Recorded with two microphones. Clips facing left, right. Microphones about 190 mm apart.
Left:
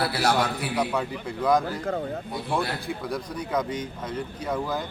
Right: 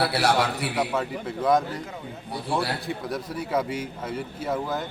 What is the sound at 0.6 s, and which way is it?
A man's voice, centre (ahead or behind).